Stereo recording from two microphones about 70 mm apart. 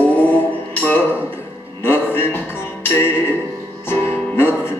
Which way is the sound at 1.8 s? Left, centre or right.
Left.